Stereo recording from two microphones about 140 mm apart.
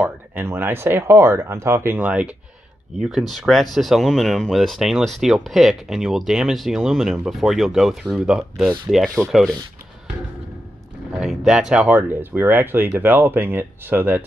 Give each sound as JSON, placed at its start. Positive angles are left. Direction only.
{"t": 0.0, "sound": "speech", "side_deg": -15}
{"t": 11.1, "sound": "speech", "side_deg": -5}